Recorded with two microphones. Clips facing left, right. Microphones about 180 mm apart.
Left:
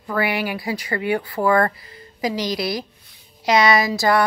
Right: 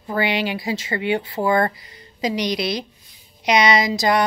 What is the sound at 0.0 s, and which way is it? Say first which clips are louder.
Speech: right 1 dB; 25° right (ahead or behind).